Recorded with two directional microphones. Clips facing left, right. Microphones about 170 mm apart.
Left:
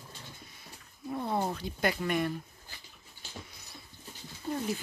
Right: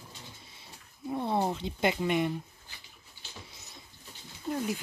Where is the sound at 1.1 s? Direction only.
20° right (ahead or behind).